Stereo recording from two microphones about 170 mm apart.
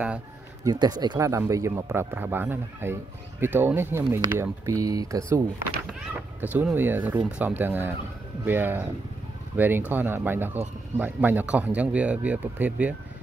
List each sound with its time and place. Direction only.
0.7 s speech: 25° right (ahead or behind)
6.4 s speech: 10° right (ahead or behind)